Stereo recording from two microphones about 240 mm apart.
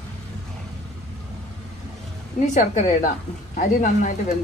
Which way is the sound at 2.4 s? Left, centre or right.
Left.